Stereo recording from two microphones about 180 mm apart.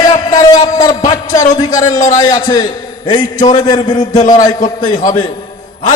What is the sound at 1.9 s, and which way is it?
Speech, 45° left (ahead or behind).